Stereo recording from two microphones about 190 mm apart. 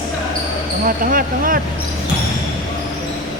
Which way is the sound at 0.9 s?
45° right (ahead or behind).